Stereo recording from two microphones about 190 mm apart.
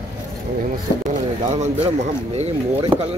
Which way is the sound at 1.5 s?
35° right (ahead or behind).